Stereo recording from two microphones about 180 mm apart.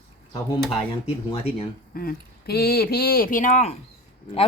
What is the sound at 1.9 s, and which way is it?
Speech, 60° left (ahead or behind).